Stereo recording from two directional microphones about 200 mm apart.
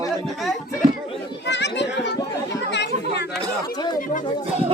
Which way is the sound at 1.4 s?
60° left (ahead or behind).